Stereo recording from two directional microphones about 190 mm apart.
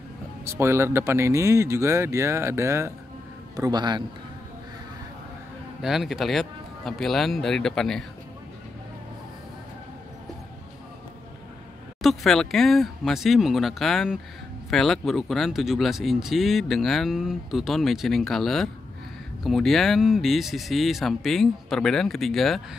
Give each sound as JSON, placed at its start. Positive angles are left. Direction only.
{"t": 0.5, "sound": "a man's voice", "side_deg": -15}
{"t": 5.8, "sound": "speech", "side_deg": 0}
{"t": 12.0, "sound": "speech", "side_deg": 0}